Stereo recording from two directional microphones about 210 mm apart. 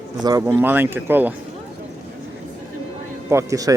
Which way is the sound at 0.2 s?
15° right (ahead or behind).